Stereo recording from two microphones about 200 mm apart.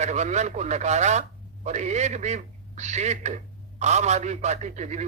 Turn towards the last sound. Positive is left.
turn(degrees=-35)  # may be behind; listen again after turning